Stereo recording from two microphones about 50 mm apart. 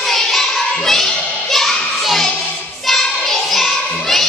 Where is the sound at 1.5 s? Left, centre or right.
Centre.